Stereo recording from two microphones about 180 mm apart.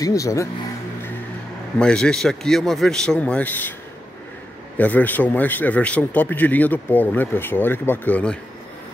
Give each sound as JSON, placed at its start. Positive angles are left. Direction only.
{"t": 0.0, "sound": "a man's voice", "side_deg": 20}
{"t": 1.8, "sound": "speech", "side_deg": 5}
{"t": 4.7, "sound": "a man's voice", "side_deg": 10}